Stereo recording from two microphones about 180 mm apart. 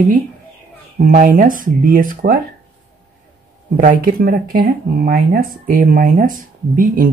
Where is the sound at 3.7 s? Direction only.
50° right (ahead or behind).